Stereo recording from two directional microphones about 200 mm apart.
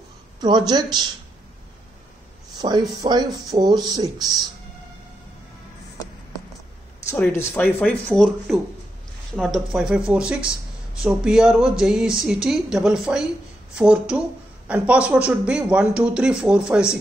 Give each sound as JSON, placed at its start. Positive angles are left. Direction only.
{"t": 0.4, "sound": "speech", "side_deg": -20}
{"t": 2.5, "sound": "speech", "side_deg": -20}
{"t": 7.1, "sound": "speech", "side_deg": 10}